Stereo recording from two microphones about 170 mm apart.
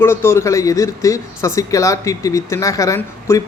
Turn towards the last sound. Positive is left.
turn(degrees=20)  # may be behind; listen again after turning